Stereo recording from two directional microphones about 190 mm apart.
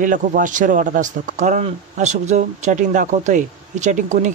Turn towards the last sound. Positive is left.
turn(degrees=-40)  # may be behind; listen again after turning